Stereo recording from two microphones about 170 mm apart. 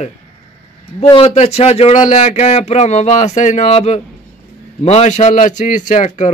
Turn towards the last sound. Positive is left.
turn(degrees=45)  # may be behind; listen again after turning